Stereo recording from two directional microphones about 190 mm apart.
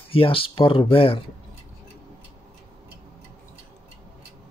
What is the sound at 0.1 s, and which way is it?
Speech, 30° left (ahead or behind).